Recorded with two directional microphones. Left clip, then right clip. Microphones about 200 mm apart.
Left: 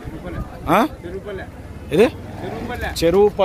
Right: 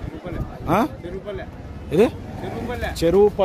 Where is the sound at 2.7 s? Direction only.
40° right (ahead or behind).